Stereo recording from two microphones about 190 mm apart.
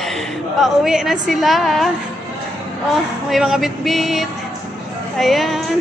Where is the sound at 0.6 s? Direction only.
Centre (ahead or behind).